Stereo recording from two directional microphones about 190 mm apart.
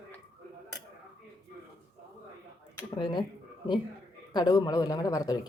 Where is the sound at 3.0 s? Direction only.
25° left (ahead or behind).